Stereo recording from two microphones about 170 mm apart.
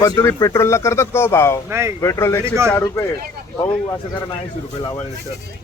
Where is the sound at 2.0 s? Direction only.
15° left (ahead or behind).